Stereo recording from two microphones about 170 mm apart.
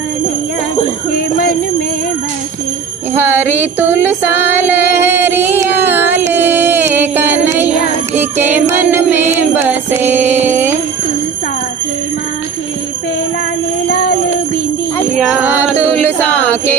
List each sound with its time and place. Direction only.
1.1 s a sound: 55° left (ahead or behind)
4.6 s a sound: 15° right (ahead or behind)
5.8 s music: 10° right (ahead or behind)
13.8 s music: 60° left (ahead or behind)
15.1 s music: centre (ahead or behind)
15.9 s music: 10° left (ahead or behind)